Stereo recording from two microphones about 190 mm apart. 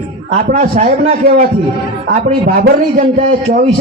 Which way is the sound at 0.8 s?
50° right (ahead or behind).